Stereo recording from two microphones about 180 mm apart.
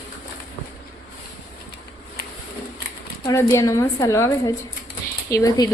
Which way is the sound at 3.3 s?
15° left (ahead or behind).